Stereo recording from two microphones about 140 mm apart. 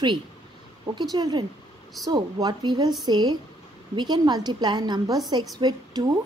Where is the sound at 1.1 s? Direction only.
30° right (ahead or behind).